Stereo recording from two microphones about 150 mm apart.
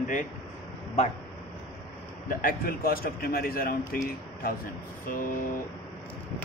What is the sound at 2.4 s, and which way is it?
A man's voice, 75° left (ahead or behind).